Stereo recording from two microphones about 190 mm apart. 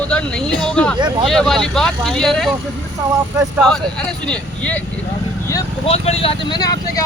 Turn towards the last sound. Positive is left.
turn(degrees=20)  # may be behind; listen again after turning